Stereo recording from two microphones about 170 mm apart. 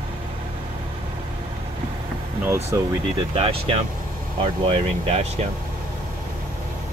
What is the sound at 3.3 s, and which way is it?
Speech, 35° right (ahead or behind).